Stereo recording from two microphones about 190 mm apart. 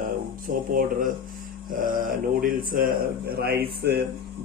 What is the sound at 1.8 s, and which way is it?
Speech, 45° right (ahead or behind).